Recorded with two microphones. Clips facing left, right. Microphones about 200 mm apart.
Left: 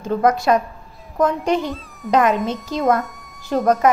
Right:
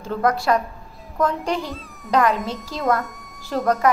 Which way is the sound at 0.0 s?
20° left (ahead or behind).